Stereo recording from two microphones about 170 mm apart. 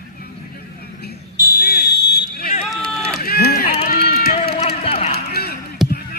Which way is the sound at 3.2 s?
65° left (ahead or behind).